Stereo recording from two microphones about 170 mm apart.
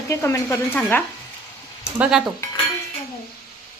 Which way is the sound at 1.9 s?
10° right (ahead or behind).